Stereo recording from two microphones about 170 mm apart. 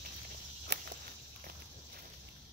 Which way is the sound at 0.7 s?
80° right.